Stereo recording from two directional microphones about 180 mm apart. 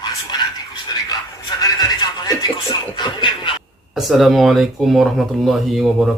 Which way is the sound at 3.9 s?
Centre (ahead or behind).